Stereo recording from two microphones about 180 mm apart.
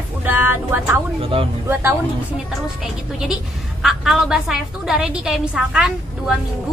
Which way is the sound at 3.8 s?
Centre (ahead or behind).